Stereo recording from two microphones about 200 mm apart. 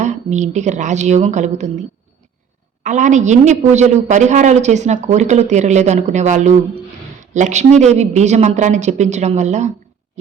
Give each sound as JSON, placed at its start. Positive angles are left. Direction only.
{"t": 0.0, "sound": "a woman's voice", "side_deg": -35}
{"t": 2.8, "sound": "a woman's voice", "side_deg": -40}